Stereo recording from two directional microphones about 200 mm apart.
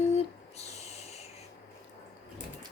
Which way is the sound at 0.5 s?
30° left (ahead or behind).